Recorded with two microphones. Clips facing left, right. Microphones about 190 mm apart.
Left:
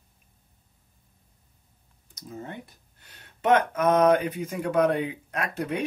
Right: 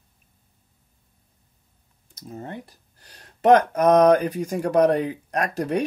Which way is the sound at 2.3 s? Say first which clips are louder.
Right 3 dB; 40° right (ahead or behind).